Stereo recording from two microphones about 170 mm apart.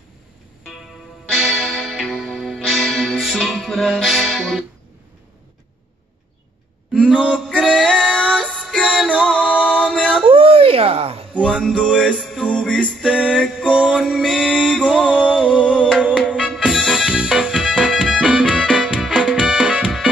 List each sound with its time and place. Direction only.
1.3 s music: centre (ahead or behind)
6.9 s female singing: centre (ahead or behind)
10.2 s a sound: 35° right (ahead or behind)
11.4 s music: 5° left (ahead or behind)
18.4 s music: 5° left (ahead or behind)
18.7 s music: 5° right (ahead or behind)